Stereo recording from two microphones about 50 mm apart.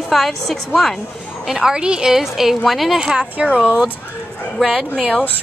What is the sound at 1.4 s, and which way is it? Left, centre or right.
Speech, centre.